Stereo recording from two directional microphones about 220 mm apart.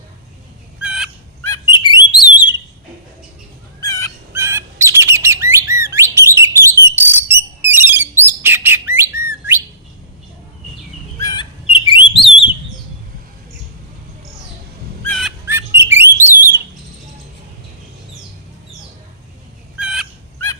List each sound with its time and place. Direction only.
0.8 s fowl: 5° right (ahead or behind)
1.5 s bird: 20° left (ahead or behind)
3.8 s fowl: 15° left (ahead or behind)
4.3 s bird: 10° right (ahead or behind)
11.2 s bird: 20° left (ahead or behind)
15.0 s fowl: 5° left (ahead or behind)
15.4 s bird: 10° right (ahead or behind)
19.8 s fowl: 5° right (ahead or behind)